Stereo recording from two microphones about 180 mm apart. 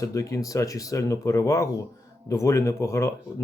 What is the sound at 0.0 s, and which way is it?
Speech, 20° left (ahead or behind).